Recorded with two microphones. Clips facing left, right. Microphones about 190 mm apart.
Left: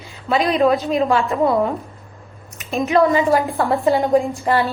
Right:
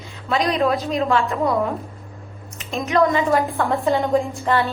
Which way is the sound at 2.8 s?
Centre (ahead or behind).